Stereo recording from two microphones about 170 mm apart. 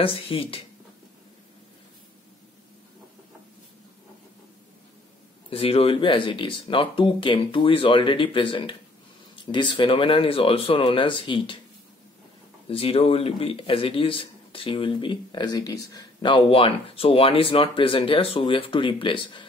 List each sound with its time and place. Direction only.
0.0 s a man's voice: 35° left (ahead or behind)
5.5 s a man's voice: 35° left (ahead or behind)
12.6 s a man's voice: 35° left (ahead or behind)